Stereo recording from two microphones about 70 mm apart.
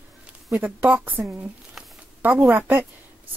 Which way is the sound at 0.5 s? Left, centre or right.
Right.